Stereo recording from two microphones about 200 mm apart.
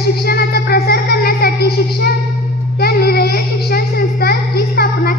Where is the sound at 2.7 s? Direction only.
50° left (ahead or behind).